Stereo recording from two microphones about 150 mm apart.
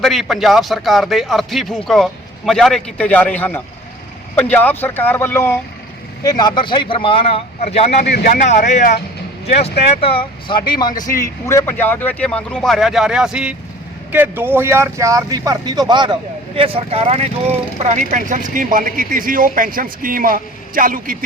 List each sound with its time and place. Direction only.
0.0 s a man's voice: centre (ahead or behind); by 5.5 s 15° left (ahead or behind)
6.2 s speech: 30° left (ahead or behind); by 8.1 s 45° left (ahead or behind)
8.1 s speech: 65° left (ahead or behind)
10.0 s speech: 40° left (ahead or behind); by 21.2 s 65° right (ahead or behind)